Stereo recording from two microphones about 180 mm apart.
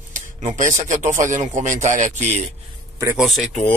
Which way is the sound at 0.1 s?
45° right (ahead or behind).